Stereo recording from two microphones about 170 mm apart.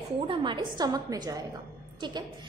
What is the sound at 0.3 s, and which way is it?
A woman's voice, 30° right (ahead or behind).